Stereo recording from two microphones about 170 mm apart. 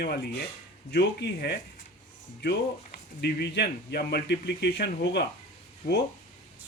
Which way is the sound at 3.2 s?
75° left (ahead or behind).